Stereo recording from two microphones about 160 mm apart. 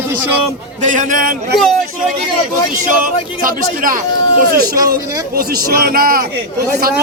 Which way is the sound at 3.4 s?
60° right (ahead or behind).